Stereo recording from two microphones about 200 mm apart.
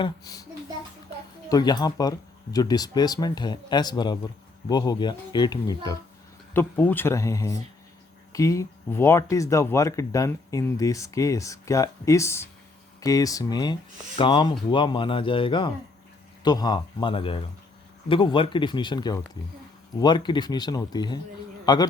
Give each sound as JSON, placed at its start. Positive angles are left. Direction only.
{"t": 0.0, "sound": "speech", "side_deg": 20}
{"t": 1.5, "sound": "speech", "side_deg": 20}